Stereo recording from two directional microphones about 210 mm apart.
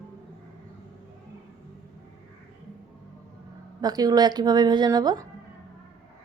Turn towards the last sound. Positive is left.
turn(degrees=-20)  # may be behind; listen again after turning